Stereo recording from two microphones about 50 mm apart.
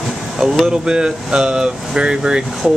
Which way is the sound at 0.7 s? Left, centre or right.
Centre.